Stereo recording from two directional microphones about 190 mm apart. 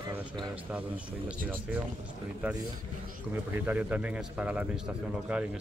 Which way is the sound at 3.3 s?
10° right (ahead or behind).